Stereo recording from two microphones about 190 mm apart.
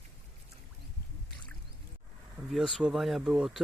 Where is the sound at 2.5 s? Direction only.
Centre (ahead or behind).